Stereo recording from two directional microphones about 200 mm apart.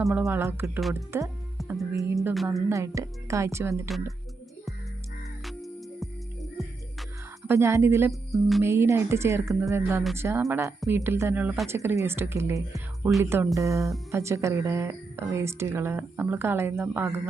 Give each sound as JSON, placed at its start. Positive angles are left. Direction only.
{"t": 0.0, "sound": "music", "side_deg": 0}
{"t": 0.3, "sound": "a woman's voice", "side_deg": -10}
{"t": 1.7, "sound": "music", "side_deg": 0}
{"t": 2.6, "sound": "a woman's voice", "side_deg": -15}
{"t": 5.5, "sound": "music", "side_deg": 0}
{"t": 7.4, "sound": "a woman's voice", "side_deg": -15}
{"t": 8.3, "sound": "music", "side_deg": 0}
{"t": 8.6, "sound": "a woman's voice", "side_deg": -15}